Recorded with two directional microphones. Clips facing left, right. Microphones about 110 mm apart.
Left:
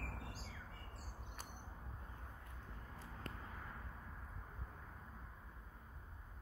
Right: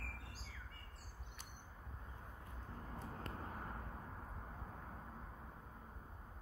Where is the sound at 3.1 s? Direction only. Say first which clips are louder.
Right 2 dB; 40° right (ahead or behind).